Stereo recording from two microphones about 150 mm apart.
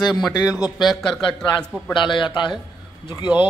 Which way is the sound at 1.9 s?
30° left (ahead or behind).